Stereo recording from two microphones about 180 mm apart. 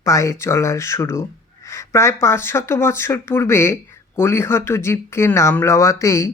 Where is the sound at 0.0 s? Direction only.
15° left (ahead or behind).